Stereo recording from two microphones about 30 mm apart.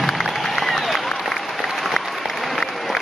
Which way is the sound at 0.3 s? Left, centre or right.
Centre.